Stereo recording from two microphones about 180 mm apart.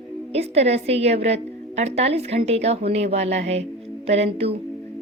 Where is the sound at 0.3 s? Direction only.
35° right (ahead or behind).